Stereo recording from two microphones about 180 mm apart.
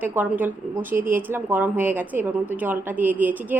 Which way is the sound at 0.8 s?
50° right (ahead or behind).